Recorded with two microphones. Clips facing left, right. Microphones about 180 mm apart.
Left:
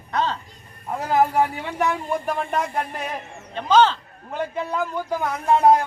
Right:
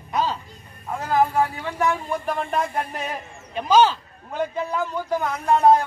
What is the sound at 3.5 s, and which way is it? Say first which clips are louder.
Speech: even; 10° right (ahead or behind).